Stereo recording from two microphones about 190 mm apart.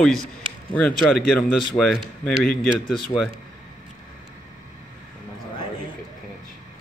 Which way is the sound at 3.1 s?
30° left (ahead or behind).